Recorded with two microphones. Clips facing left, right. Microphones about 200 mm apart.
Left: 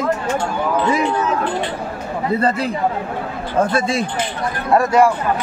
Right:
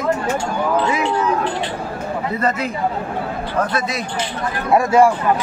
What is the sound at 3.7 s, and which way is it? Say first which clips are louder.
Speech: left 4 dB; 30° left (ahead or behind).